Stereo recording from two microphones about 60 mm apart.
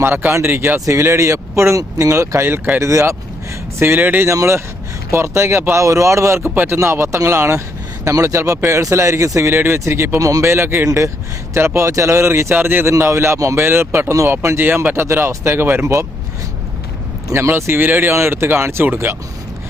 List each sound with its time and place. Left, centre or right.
0.0 s speech: right
3.8 s speech: right
4.3 s speech: right
6.4 s speech: right
6.7 s speech: right
10.2 s speech: right
10.5 s speech: right
11.9 s speech: right
13.7 s speech: right
17.3 s speech: right
18.1 s speech: right